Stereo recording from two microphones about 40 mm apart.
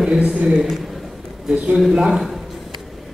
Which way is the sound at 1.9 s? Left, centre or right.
Centre.